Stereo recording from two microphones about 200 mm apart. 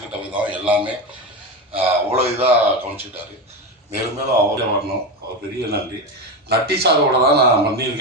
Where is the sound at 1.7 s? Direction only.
30° right (ahead or behind).